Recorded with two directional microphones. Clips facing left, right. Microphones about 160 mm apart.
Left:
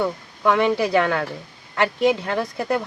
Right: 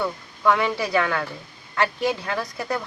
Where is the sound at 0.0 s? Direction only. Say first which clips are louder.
Left 2 dB; 20° left (ahead or behind).